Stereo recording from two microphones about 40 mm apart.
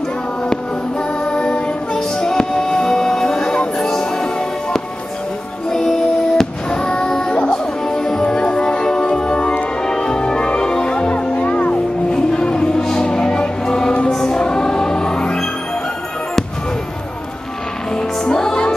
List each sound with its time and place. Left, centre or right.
1.2 s music: left
5.7 s fireworks: centre
7.4 s music: centre; by 11.7 s left
12.1 s music: left
17.9 s music: centre